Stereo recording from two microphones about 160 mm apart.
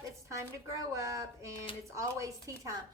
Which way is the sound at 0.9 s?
20° right (ahead or behind).